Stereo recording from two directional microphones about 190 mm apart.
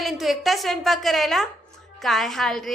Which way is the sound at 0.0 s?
Centre (ahead or behind).